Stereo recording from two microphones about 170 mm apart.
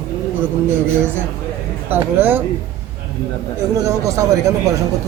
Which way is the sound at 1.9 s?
10° right (ahead or behind).